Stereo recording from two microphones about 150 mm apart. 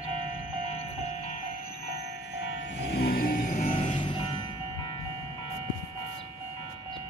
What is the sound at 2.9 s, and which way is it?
Music, 90° left.